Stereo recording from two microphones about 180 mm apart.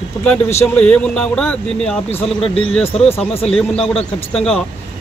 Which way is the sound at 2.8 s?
30° left (ahead or behind).